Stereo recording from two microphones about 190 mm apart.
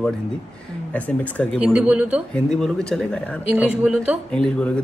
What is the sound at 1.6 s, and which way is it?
Speech, 10° right (ahead or behind).